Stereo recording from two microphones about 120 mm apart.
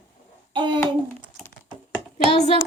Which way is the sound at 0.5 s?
40° right (ahead or behind).